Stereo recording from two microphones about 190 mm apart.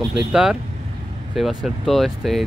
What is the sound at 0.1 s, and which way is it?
Speech, 5° right (ahead or behind).